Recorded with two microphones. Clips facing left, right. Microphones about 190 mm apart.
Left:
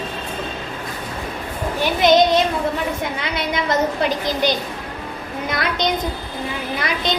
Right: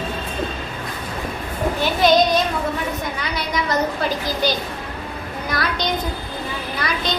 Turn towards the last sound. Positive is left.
turn(degrees=20)  # may be behind; listen again after turning